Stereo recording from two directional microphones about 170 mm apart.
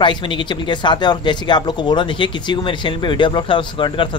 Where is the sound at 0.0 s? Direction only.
30° left (ahead or behind).